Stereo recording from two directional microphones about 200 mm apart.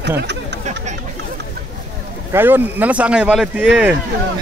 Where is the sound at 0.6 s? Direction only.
35° right (ahead or behind).